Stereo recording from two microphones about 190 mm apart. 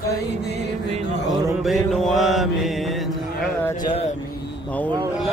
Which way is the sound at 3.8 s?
30° left (ahead or behind).